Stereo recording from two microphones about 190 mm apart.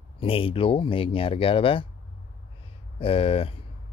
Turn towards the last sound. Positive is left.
turn(degrees=30)  # may be behind; listen again after turning